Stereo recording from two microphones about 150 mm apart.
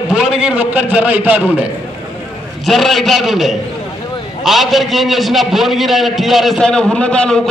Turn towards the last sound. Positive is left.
turn(degrees=5)  # may be behind; listen again after turning